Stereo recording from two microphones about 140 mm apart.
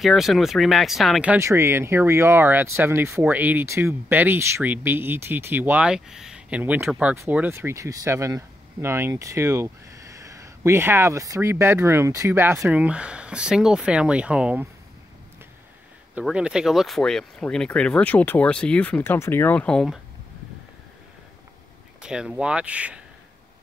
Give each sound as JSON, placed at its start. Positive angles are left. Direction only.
{"t": 0.0, "sound": "speech", "side_deg": 0}
{"t": 1.3, "sound": "speech", "side_deg": -20}
{"t": 16.2, "sound": "speech", "side_deg": -5}
{"t": 22.0, "sound": "speech", "side_deg": -5}